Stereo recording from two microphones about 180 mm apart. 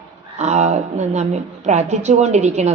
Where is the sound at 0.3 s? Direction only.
40° right (ahead or behind).